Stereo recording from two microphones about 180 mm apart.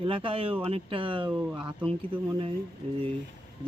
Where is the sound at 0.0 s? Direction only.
30° right (ahead or behind).